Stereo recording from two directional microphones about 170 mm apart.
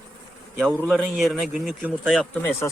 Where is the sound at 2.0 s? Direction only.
5° left (ahead or behind).